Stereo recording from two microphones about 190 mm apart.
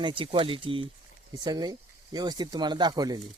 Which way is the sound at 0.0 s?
25° right (ahead or behind).